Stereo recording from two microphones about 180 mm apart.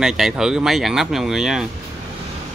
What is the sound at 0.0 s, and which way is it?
Speech, centre (ahead or behind).